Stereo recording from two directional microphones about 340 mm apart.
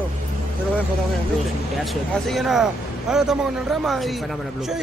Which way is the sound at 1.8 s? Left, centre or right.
Centre.